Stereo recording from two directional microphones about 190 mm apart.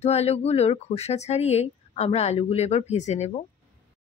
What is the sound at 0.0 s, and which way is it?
Speech, 35° left (ahead or behind).